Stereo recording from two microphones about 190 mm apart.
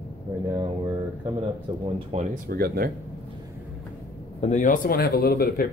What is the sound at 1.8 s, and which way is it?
Speech, 35° right (ahead or behind).